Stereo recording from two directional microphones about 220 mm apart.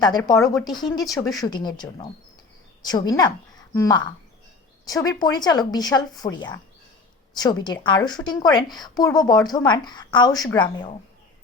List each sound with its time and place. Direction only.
0.0 s a woman's voice: 15° left (ahead or behind)